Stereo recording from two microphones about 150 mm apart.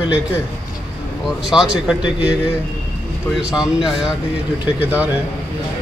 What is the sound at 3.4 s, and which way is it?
Speech, 5° right (ahead or behind).